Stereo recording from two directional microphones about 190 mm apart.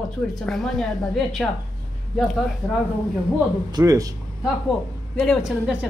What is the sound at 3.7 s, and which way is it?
Speech, 20° right (ahead or behind).